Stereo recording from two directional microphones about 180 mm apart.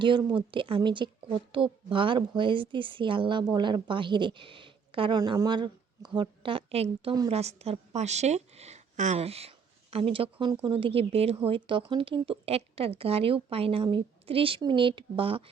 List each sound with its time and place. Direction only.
0.0 s a woman's voice: 25° right (ahead or behind)